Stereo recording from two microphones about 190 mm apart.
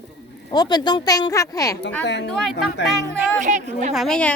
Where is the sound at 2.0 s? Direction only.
65° left (ahead or behind).